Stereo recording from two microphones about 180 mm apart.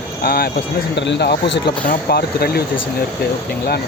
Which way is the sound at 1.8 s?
60° left (ahead or behind).